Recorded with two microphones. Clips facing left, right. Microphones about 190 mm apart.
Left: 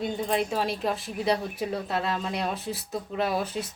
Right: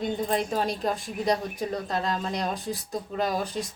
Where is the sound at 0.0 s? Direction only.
5° left (ahead or behind).